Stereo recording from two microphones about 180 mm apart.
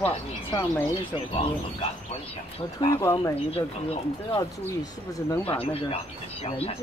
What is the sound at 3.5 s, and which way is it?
Speech, 35° left (ahead or behind).